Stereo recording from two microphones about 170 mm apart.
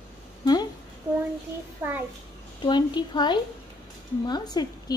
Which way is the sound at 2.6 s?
25° left (ahead or behind).